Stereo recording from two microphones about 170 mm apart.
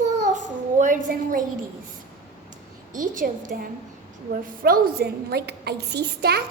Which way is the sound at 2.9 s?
50° right (ahead or behind).